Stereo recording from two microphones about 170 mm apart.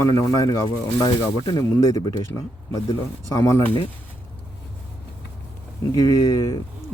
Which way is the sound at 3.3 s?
15° left (ahead or behind).